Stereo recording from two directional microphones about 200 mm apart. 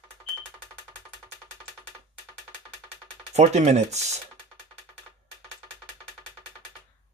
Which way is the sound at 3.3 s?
35° right (ahead or behind).